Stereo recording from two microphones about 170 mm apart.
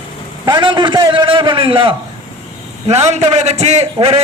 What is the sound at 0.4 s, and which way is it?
A man's voice, 25° right (ahead or behind).